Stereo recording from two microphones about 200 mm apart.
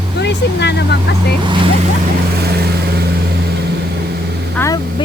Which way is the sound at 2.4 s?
50° right (ahead or behind).